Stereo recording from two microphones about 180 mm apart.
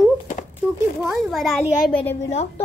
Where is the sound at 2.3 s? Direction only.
35° left (ahead or behind).